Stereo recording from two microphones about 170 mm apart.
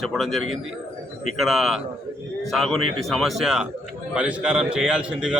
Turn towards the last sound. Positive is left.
turn(degrees=-5)  # may be behind; listen again after turning